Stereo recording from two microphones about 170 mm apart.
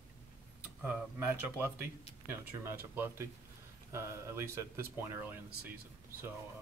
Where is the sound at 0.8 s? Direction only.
10° right (ahead or behind).